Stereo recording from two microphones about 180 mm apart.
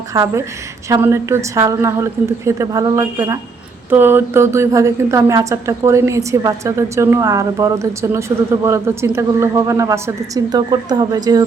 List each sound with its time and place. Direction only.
0.1 s speech: 20° right (ahead or behind)